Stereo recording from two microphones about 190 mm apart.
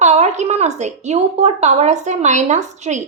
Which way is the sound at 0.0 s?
35° right (ahead or behind).